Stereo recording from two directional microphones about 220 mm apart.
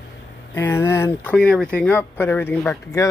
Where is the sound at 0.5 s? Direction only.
10° left (ahead or behind).